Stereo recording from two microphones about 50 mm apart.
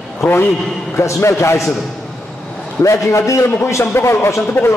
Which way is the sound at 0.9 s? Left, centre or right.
Left.